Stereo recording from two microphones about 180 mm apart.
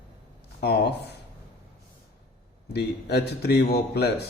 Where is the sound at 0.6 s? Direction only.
65° left (ahead or behind).